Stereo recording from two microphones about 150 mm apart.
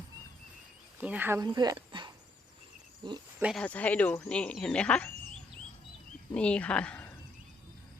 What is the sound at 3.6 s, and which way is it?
Speech, 10° left (ahead or behind).